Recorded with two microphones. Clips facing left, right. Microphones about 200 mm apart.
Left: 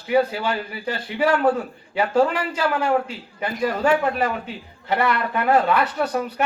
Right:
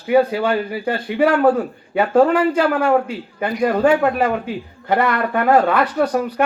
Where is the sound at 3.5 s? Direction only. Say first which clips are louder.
Right 6 dB; 45° right (ahead or behind).